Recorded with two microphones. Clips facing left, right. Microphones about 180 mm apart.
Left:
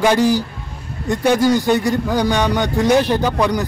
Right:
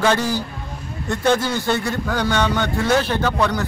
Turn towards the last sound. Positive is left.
turn(degrees=15)  # may be behind; listen again after turning